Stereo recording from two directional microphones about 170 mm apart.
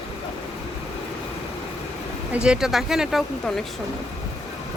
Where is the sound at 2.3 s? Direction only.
5° right (ahead or behind).